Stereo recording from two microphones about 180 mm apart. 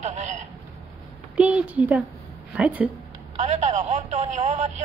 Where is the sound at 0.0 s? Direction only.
40° right (ahead or behind).